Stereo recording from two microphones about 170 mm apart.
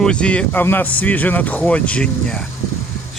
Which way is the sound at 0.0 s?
5° left (ahead or behind).